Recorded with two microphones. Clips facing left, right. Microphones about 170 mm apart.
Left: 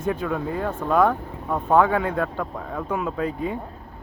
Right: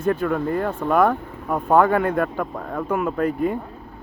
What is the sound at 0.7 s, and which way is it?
Speech, 10° right (ahead or behind).